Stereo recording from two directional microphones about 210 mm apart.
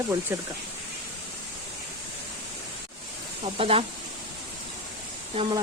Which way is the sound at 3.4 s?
25° right (ahead or behind).